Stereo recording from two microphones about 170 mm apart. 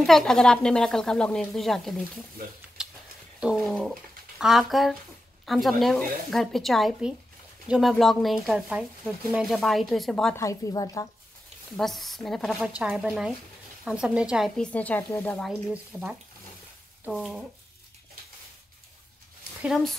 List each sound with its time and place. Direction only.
0.0 s speech: centre (ahead or behind)
2.8 s a sound: 5° right (ahead or behind)
3.3 s speech: 5° right (ahead or behind)
10.3 s a woman's voice: 20° left (ahead or behind)
11.7 s speech: centre (ahead or behind)
14.6 s speech: 10° left (ahead or behind)
15.7 s speech: 10° right (ahead or behind)
19.6 s speech: centre (ahead or behind)